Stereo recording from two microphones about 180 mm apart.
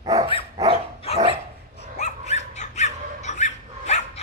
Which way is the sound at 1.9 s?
40° left (ahead or behind).